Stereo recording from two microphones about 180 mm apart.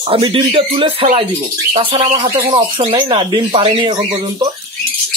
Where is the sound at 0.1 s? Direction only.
30° right (ahead or behind).